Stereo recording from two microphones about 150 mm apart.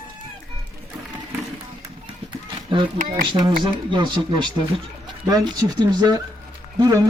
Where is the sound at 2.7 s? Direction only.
30° right (ahead or behind).